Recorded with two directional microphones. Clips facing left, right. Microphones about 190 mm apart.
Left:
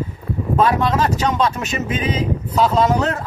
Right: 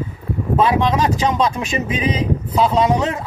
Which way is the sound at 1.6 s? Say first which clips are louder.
Right 2 dB; 30° right (ahead or behind).